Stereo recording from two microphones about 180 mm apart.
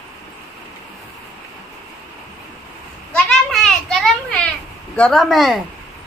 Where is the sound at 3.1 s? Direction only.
5° left (ahead or behind).